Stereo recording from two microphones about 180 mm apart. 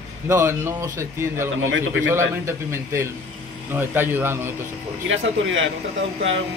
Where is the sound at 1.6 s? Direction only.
90° right.